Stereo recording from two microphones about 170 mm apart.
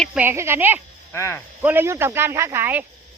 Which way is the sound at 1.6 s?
15° right (ahead or behind).